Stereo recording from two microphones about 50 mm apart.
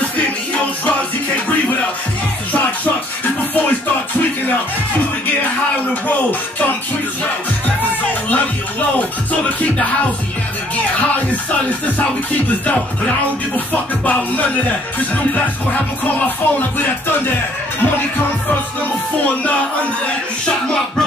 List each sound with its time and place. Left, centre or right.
8.9 s music: left
15.3 s music: left